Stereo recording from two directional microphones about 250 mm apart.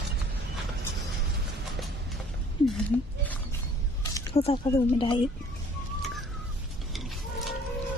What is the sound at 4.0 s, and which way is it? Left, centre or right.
Speech, centre.